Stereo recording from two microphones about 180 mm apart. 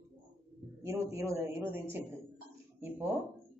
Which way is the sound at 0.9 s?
15° right (ahead or behind).